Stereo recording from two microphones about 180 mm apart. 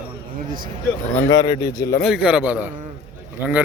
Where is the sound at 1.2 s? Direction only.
20° left (ahead or behind).